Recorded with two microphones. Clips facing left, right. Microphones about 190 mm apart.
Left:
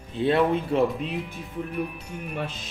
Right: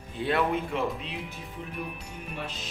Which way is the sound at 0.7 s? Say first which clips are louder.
Left 7 dB; 50° left (ahead or behind).